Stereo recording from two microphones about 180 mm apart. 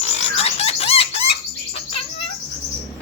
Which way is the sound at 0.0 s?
35° left (ahead or behind).